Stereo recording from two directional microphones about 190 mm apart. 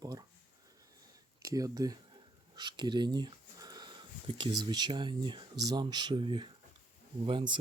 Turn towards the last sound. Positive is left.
turn(degrees=-25)  # may be behind; listen again after turning